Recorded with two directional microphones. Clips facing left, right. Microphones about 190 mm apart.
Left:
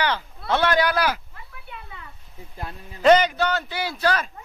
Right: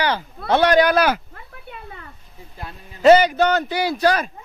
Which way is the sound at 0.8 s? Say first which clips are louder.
Right 5 dB; 55° right (ahead or behind).